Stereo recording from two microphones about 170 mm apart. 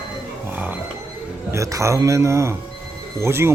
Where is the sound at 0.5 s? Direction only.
10° right (ahead or behind).